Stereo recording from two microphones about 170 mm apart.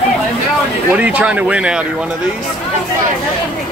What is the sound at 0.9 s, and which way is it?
Speech, 10° right (ahead or behind).